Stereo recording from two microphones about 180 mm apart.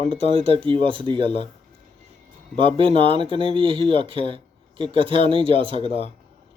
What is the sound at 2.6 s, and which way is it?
Speech, 30° right (ahead or behind).